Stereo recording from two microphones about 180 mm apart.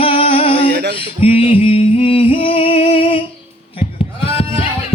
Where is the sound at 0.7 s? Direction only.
65° right (ahead or behind).